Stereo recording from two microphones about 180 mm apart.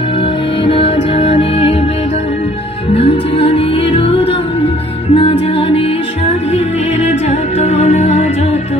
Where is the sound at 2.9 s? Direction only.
35° left (ahead or behind).